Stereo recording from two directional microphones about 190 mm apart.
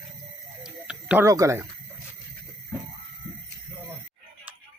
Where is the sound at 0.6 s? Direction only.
5° right (ahead or behind).